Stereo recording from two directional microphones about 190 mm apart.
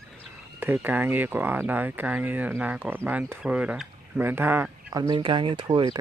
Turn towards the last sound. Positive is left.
turn(degrees=-25)  # may be behind; listen again after turning